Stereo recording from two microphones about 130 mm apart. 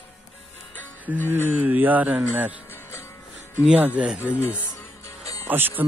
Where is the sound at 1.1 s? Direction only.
10° right (ahead or behind).